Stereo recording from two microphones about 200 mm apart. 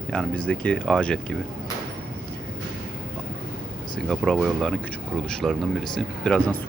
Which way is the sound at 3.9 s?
Centre (ahead or behind).